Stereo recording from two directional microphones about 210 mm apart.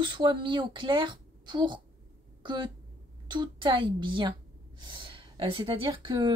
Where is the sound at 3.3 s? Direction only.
20° right (ahead or behind).